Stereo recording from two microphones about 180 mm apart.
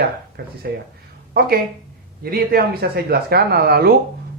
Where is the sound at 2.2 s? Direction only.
55° right (ahead or behind).